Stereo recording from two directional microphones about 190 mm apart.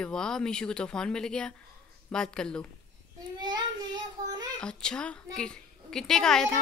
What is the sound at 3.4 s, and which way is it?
Child singing, 20° right (ahead or behind).